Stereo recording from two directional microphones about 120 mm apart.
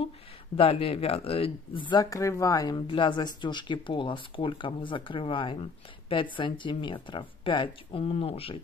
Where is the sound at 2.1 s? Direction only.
25° left (ahead or behind).